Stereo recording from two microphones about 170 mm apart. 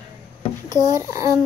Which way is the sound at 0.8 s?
20° right (ahead or behind).